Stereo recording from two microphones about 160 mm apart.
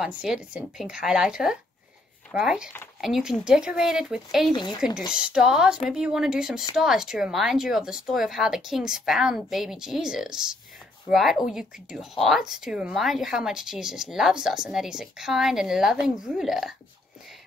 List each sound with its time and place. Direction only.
0.0 s speech: 5° right (ahead or behind)
4.5 s speech: 25° left (ahead or behind)
5.1 s speech: 5° right (ahead or behind)